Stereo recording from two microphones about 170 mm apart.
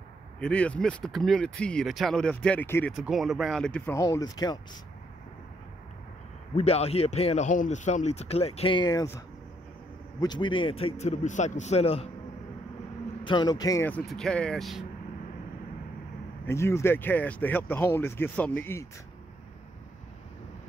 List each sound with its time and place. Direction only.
0.4 s speech: 5° left (ahead or behind)
3.0 s speech: centre (ahead or behind); by 4.6 s 25° left (ahead or behind)
6.5 s speech: 35° left (ahead or behind); by 9.2 s 20° left (ahead or behind)
10.2 s speech: 25° left (ahead or behind)
13.2 s speech: 25° left (ahead or behind)
14.0 s speech: 5° left (ahead or behind)
16.4 s speech: 15° left (ahead or behind)